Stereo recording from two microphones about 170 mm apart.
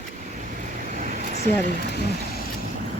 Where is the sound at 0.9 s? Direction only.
50° right (ahead or behind).